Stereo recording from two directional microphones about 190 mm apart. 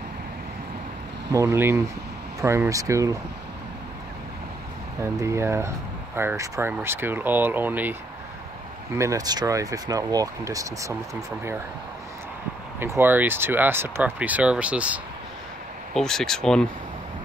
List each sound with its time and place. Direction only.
1.3 s speech: 15° right (ahead or behind)
5.0 s speech: 15° right (ahead or behind)
8.9 s speech: 15° right (ahead or behind)
12.8 s speech: 10° right (ahead or behind); by 16.6 s 5° left (ahead or behind)